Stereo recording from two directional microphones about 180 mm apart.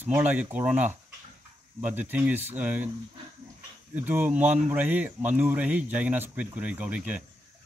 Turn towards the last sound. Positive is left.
turn(degrees=-10)  # may be behind; listen again after turning